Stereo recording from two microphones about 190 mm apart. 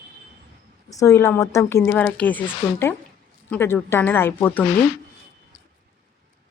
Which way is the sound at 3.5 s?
10° left (ahead or behind).